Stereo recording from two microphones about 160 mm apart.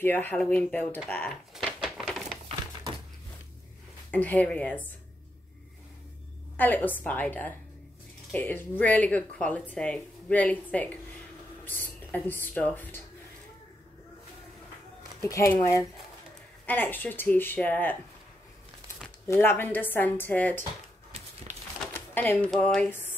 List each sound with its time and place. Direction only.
0.0 s a woman's voice: 10° left (ahead or behind)
1.5 s a sound: centre (ahead or behind)
4.1 s a woman's voice: 10° left (ahead or behind)
6.5 s a woman's voice: 10° left (ahead or behind)
15.2 s a woman's voice: 15° left (ahead or behind)
19.2 s a woman's voice: 15° left (ahead or behind)
21.9 s speech: 10° left (ahead or behind)